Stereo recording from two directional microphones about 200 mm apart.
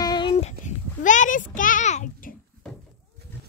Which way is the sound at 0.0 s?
20° left (ahead or behind).